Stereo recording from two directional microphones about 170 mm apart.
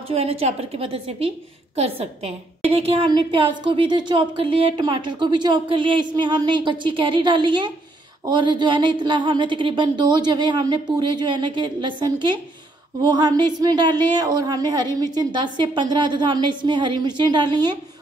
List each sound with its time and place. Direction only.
0.1 s a woman's voice: 35° right (ahead or behind)